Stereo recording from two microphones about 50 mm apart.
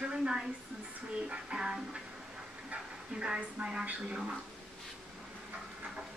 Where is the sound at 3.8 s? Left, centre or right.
Right.